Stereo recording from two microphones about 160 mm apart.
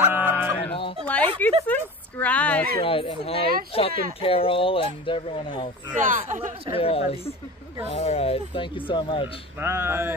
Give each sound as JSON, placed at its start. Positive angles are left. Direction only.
{"t": 0.0, "sound": "a sound", "side_deg": -10}
{"t": 0.3, "sound": "a sound", "side_deg": 10}
{"t": 1.7, "sound": "speech", "side_deg": 10}
{"t": 2.8, "sound": "speech", "side_deg": 35}
{"t": 5.9, "sound": "speech", "side_deg": -50}
{"t": 6.7, "sound": "speech", "side_deg": 40}
{"t": 9.6, "sound": "speech", "side_deg": -15}